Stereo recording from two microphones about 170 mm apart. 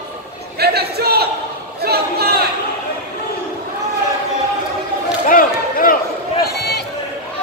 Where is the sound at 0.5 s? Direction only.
70° right (ahead or behind).